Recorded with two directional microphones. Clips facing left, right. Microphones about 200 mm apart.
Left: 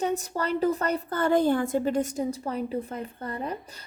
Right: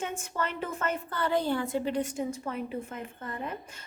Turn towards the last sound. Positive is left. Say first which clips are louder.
# left 4 dB
turn(degrees=35)  # may be behind; listen again after turning